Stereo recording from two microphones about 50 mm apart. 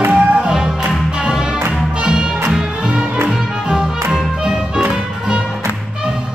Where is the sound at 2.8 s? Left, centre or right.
Right.